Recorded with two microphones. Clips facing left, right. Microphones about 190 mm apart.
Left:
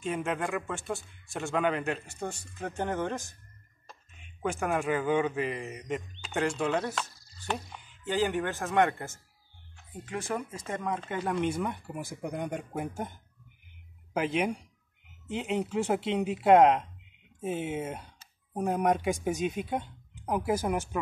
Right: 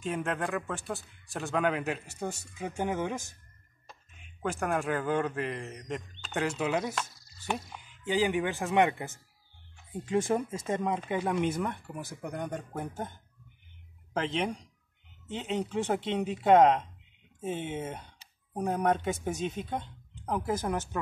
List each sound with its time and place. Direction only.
0.0 s a man's voice: centre (ahead or behind); by 11.2 s 15° right (ahead or behind)
11.2 s speech: 5° right (ahead or behind)
14.1 s speech: 10° left (ahead or behind)